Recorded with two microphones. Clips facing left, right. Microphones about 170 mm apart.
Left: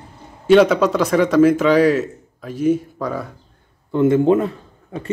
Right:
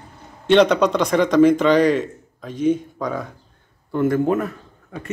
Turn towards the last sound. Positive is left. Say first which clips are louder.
# left 4 dB
turn(degrees=30)  # may be behind; listen again after turning